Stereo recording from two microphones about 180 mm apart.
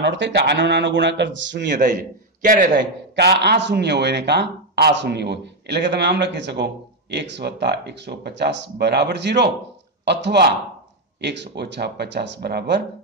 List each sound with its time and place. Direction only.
0.0 s a man's voice: 80° right
2.4 s a man's voice: 50° right (ahead or behind)
2.7 s a man's voice: 70° right (ahead or behind)